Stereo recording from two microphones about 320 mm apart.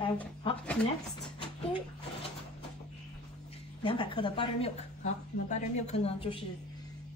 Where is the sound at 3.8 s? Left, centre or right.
Centre.